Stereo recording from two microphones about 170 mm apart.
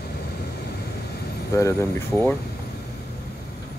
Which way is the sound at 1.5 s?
15° left (ahead or behind).